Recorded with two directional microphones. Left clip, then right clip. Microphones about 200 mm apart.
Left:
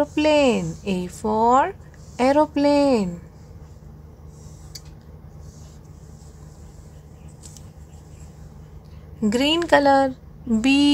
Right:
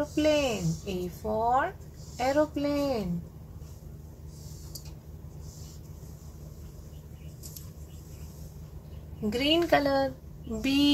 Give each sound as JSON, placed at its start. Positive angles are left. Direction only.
{"t": 0.0, "sound": "speech", "side_deg": 45}
{"t": 9.3, "sound": "a woman's voice", "side_deg": 40}